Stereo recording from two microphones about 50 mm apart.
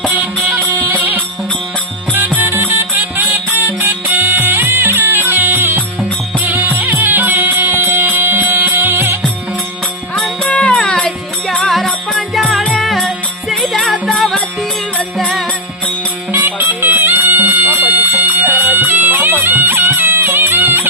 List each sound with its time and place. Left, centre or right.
0.9 s music: right
2.3 s music: right
6.4 s music: right
10.5 s music: left; by 15.4 s centre
16.3 s music: right